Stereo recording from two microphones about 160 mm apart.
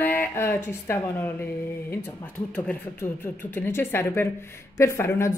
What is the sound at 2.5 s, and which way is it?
Speech, 10° left (ahead or behind).